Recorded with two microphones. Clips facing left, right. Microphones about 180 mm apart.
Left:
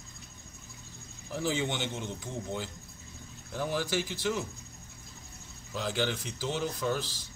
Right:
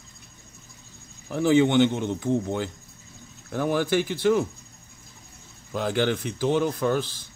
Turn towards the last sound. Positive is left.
turn(degrees=-55)  # may be behind; listen again after turning